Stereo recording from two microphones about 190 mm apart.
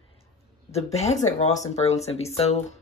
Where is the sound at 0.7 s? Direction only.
35° left (ahead or behind).